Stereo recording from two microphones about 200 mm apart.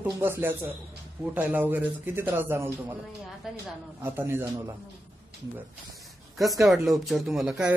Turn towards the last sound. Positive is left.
turn(degrees=-5)  # may be behind; listen again after turning